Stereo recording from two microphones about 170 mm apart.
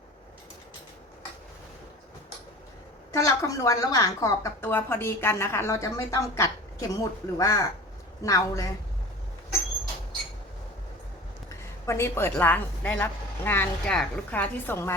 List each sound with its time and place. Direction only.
3.1 s a woman's voice: 20° left (ahead or behind)
11.9 s a woman's voice: 15° left (ahead or behind)